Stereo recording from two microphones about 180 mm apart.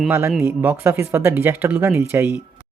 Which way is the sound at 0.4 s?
10° right (ahead or behind).